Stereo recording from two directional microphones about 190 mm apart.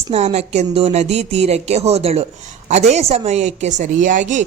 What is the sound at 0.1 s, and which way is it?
A woman's voice, 35° right (ahead or behind).